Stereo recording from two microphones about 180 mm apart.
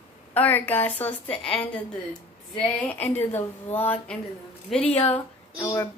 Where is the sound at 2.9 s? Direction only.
10° left (ahead or behind).